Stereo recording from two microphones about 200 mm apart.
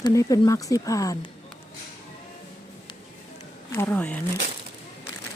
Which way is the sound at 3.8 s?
10° left (ahead or behind).